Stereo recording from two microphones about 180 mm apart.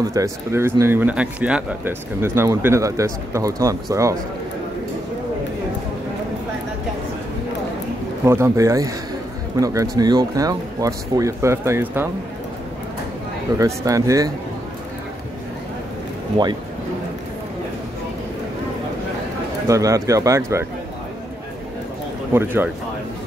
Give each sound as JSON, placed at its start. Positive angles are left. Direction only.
{"t": 0.0, "sound": "speech", "side_deg": -20}
{"t": 8.3, "sound": "speech", "side_deg": -15}
{"t": 13.6, "sound": "speech", "side_deg": -20}
{"t": 16.4, "sound": "speech", "side_deg": -25}
{"t": 19.7, "sound": "speech", "side_deg": -20}
{"t": 22.3, "sound": "speech", "side_deg": -10}